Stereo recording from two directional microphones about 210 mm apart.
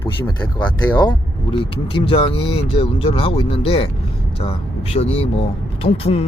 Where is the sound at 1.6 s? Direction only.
25° left (ahead or behind).